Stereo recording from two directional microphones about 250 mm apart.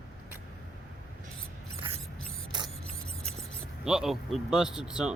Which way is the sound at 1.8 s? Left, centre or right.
Right.